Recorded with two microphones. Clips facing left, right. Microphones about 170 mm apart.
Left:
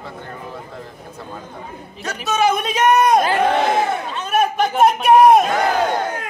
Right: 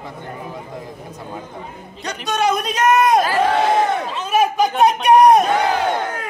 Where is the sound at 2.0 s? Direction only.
5° left (ahead or behind).